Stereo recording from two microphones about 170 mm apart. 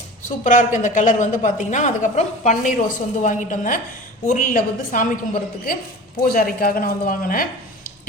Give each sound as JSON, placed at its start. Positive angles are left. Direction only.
{"t": 0.3, "sound": "a woman's voice", "side_deg": 50}